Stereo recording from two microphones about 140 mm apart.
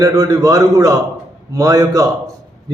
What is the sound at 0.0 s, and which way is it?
A man's voice, 25° right (ahead or behind).